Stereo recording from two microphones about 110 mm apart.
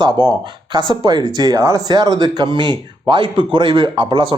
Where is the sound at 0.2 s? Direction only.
45° right (ahead or behind).